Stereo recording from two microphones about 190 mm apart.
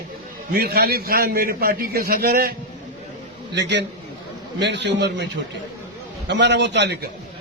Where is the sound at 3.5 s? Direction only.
65° right (ahead or behind).